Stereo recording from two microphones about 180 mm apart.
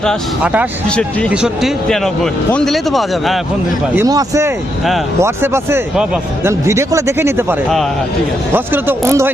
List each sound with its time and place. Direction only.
0.4 s speech: 10° right (ahead or behind)
0.9 s speech: 5° left (ahead or behind)
3.9 s speech: 20° right (ahead or behind)
8.5 s speech: 10° right (ahead or behind)